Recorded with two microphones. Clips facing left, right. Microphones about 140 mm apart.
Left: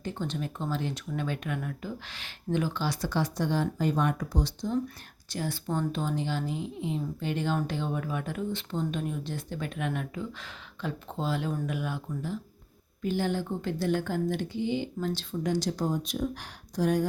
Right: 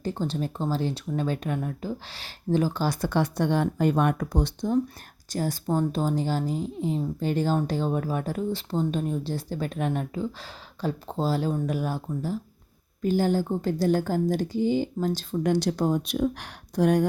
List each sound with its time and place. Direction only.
0.0 s speech: 35° right (ahead or behind); by 4.8 s 55° right (ahead or behind)
5.3 s speech: 40° right (ahead or behind)
15.4 s speech: 65° right (ahead or behind)